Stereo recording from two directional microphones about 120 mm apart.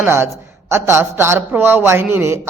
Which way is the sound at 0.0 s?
20° right (ahead or behind).